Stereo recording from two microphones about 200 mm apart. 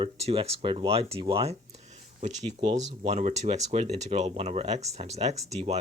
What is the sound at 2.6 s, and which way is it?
Speech, 35° right (ahead or behind).